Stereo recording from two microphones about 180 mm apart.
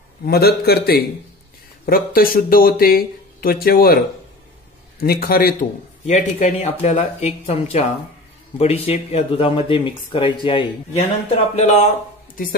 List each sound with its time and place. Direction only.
0.2 s speech: 60° left (ahead or behind)
5.0 s speech: 55° left (ahead or behind); by 11.9 s 40° left (ahead or behind)